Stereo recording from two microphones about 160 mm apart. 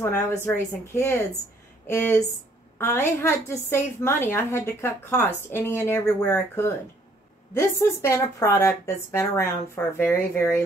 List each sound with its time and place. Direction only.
0.0 s a woman's voice: 15° left (ahead or behind)